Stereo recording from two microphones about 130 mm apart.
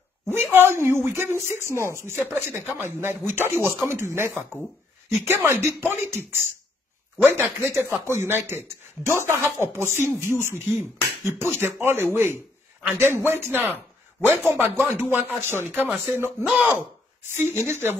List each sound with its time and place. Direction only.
0.3 s speech: 20° right (ahead or behind)
16.4 s speech: 10° right (ahead or behind)